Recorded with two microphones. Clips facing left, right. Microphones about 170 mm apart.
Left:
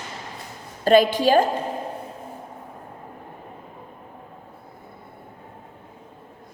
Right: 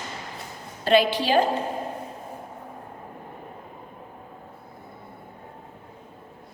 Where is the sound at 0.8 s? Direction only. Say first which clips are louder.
Left 4 dB; 45° left (ahead or behind).